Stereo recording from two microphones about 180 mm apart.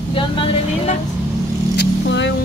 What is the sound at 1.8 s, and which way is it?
Vehicle, 80° left.